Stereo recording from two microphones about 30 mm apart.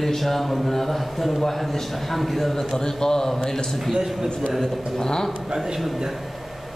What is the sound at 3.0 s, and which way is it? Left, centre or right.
Speech, centre.